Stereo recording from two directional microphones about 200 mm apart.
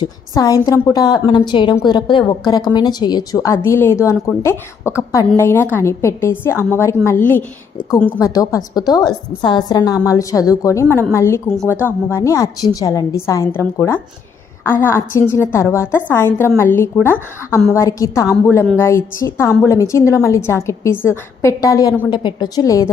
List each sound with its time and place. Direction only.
0.0 s a woman's voice: 20° left (ahead or behind)